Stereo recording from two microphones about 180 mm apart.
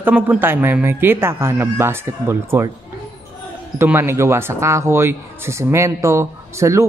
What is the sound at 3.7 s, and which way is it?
Speech, 15° right (ahead or behind).